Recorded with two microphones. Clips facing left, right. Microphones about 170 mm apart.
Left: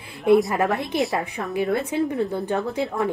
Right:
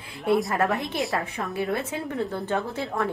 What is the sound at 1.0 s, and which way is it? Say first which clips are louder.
Speech: left 3 dB; centre (ahead or behind).